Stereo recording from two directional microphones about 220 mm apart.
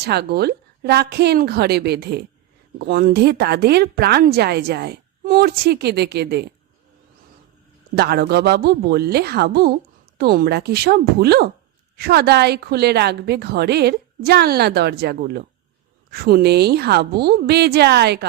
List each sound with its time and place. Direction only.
0.0 s speech: 45° right (ahead or behind)
7.9 s speech: 45° right (ahead or behind)